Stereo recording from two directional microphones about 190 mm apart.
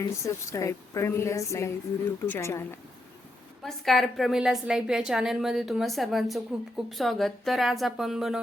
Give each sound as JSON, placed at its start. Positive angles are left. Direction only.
{"t": 0.0, "sound": "a woman's voice", "side_deg": 15}
{"t": 3.6, "sound": "a woman's voice", "side_deg": 0}